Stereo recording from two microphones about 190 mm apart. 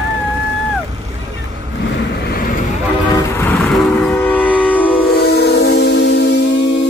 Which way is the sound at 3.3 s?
10° left (ahead or behind).